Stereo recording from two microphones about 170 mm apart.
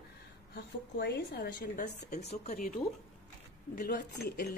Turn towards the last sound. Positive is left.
turn(degrees=65)  # may be behind; listen again after turning